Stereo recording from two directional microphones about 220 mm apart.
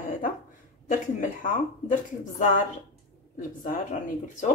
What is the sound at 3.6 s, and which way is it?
Speech, 35° left (ahead or behind).